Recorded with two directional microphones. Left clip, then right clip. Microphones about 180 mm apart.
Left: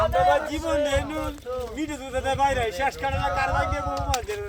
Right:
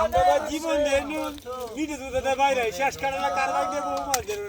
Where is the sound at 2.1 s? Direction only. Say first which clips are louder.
Right 1 dB; 30° right (ahead or behind).